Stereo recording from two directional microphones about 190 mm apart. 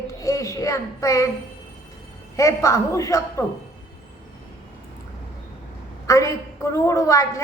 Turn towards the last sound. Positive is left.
turn(degrees=15)  # may be behind; listen again after turning